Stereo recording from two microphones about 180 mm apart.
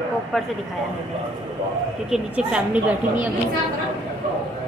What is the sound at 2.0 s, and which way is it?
Speech, 5° right (ahead or behind).